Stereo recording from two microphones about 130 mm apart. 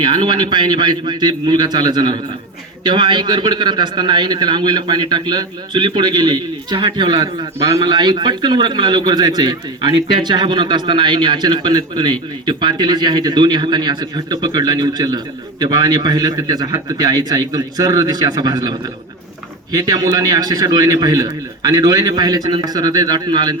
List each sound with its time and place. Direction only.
0.0 s a man's voice: 35° right (ahead or behind)